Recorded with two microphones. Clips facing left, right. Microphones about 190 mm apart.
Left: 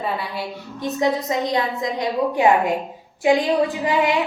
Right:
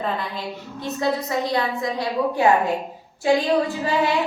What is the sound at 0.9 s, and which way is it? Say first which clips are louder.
A woman's voice: left 3 dB; 15° left (ahead or behind).